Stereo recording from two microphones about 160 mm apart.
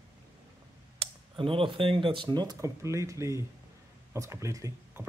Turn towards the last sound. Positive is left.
turn(degrees=-20)  # may be behind; listen again after turning